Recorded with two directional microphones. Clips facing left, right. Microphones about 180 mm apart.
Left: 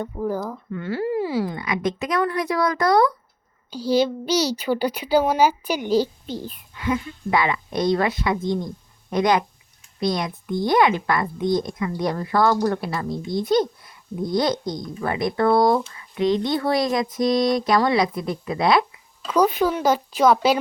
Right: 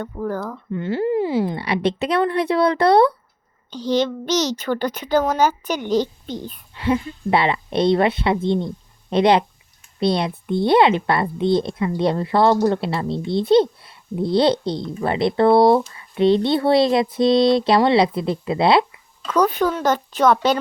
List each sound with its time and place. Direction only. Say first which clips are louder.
0.0 s a woman's voice: even; 10° left (ahead or behind)
0.7 s a woman's voice: right 4 dB; 25° right (ahead or behind)
3.7 s a woman's voice: even; 10° left (ahead or behind)
6.7 s a woman's voice: right 4 dB; 30° right (ahead or behind)
19.3 s a woman's voice: right 1 dB; 10° left (ahead or behind)